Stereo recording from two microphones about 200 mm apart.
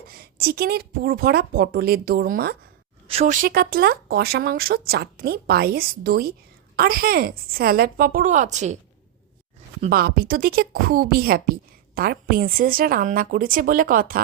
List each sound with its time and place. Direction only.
0.1 s a woman's voice: 50° right (ahead or behind)
3.1 s a woman's voice: 35° right (ahead or behind)
9.9 s a woman's voice: 50° right (ahead or behind)